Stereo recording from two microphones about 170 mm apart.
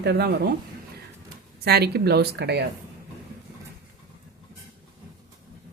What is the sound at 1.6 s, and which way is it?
A woman's voice, 70° right (ahead or behind).